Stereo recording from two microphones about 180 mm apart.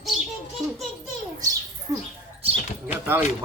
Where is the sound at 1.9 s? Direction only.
20° right (ahead or behind).